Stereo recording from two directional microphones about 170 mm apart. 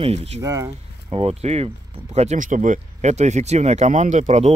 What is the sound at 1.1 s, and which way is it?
Speech, 35° right (ahead or behind).